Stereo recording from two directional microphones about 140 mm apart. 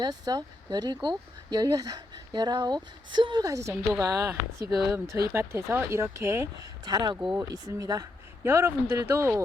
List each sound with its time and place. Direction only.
0.0 s speech: 30° right (ahead or behind)